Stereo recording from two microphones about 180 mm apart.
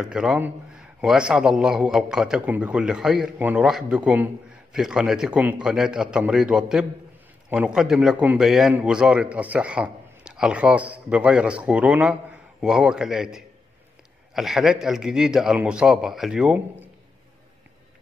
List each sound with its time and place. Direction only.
0.0 s a man's voice: 5° right (ahead or behind)